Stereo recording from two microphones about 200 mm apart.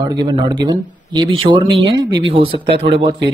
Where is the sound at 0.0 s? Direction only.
20° right (ahead or behind).